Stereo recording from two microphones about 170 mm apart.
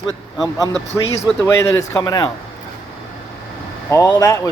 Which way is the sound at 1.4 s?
15° left (ahead or behind).